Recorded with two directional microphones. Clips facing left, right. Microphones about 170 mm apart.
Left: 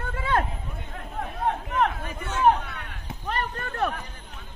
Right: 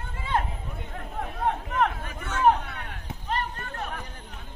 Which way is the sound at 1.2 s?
Centre (ahead or behind).